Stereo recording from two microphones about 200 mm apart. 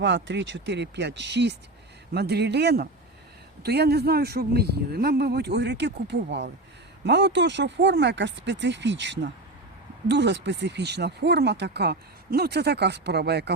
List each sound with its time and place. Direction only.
0.0 s speech: 65° right (ahead or behind)